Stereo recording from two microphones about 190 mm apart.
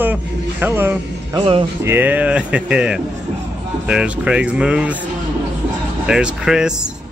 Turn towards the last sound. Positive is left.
turn(degrees=-5)  # may be behind; listen again after turning